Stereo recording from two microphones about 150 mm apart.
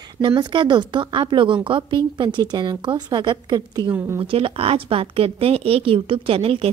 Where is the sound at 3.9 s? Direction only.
10° right (ahead or behind).